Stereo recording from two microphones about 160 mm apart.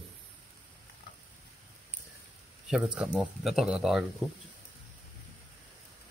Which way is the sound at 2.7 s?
5° right (ahead or behind).